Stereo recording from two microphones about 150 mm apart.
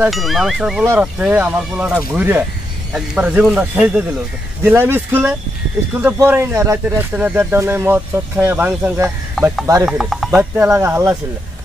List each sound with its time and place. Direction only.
0.1 s speech: centre (ahead or behind)
9.4 s speech: centre (ahead or behind)
10.5 s speech: 20° right (ahead or behind)